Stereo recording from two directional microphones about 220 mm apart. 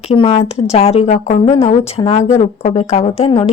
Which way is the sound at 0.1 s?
25° left (ahead or behind).